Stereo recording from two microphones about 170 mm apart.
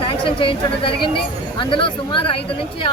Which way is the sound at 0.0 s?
30° left (ahead or behind).